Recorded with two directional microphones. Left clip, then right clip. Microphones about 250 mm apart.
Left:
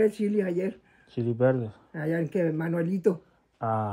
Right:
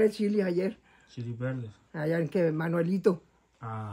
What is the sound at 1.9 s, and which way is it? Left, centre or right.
Speech, centre.